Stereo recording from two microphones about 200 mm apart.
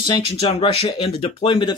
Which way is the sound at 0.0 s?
25° left (ahead or behind).